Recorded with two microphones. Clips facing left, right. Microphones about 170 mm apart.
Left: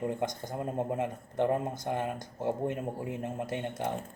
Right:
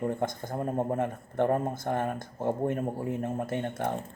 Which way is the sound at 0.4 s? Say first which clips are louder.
Right 3 dB; 45° right (ahead or behind).